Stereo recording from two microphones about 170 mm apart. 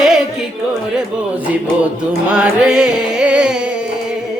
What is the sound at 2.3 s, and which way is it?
Music, 5° right (ahead or behind).